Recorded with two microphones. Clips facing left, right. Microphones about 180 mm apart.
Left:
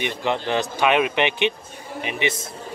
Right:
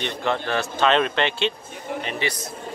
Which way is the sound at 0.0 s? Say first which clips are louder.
Left 1 dB; 15° left (ahead or behind).